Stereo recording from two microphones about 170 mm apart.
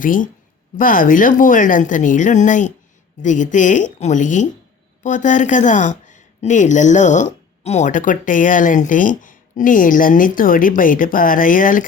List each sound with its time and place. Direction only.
0.0 s a woman's voice: 50° left (ahead or behind)